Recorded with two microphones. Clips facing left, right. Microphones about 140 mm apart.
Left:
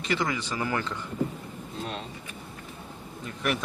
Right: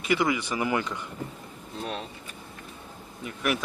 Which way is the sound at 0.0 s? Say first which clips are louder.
Right 3 dB; 10° right (ahead or behind).